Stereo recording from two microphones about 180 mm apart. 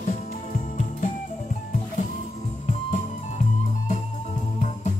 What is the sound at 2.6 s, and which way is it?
Music, 45° left (ahead or behind).